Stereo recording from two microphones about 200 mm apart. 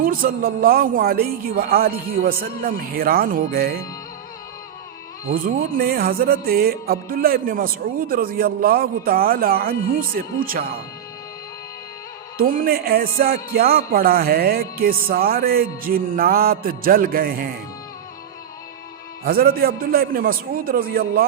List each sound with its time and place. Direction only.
0.0 s speech: 45° right (ahead or behind)
5.7 s speech: 50° right (ahead or behind)
12.4 s speech: 45° right (ahead or behind)
19.2 s speech: 45° right (ahead or behind)